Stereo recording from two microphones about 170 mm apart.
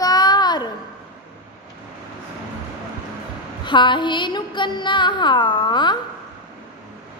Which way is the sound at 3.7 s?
25° left (ahead or behind).